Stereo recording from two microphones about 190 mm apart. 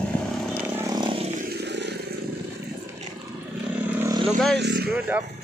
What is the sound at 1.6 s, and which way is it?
Vehicle, 65° right (ahead or behind).